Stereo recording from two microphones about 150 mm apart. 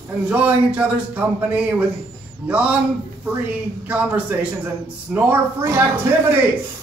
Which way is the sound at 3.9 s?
10° right (ahead or behind).